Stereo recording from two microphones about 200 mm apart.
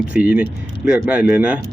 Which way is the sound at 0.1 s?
5° right (ahead or behind).